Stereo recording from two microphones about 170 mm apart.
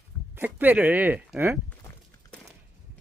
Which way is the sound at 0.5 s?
10° right (ahead or behind).